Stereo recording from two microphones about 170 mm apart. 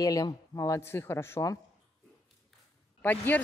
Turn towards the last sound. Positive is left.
turn(degrees=10)  # may be behind; listen again after turning